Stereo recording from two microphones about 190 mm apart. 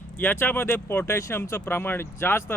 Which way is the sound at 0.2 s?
10° left (ahead or behind).